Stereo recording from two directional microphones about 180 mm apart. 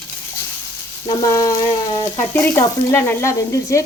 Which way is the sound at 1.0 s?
20° left (ahead or behind).